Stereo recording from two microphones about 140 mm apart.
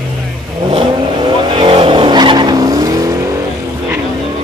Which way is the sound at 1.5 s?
40° right (ahead or behind).